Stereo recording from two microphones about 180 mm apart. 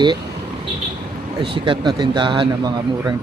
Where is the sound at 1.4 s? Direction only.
25° right (ahead or behind).